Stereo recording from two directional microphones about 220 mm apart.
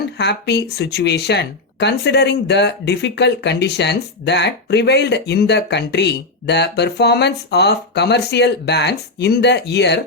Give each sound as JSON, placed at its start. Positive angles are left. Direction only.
{"t": 0.2, "sound": "speech", "side_deg": 50}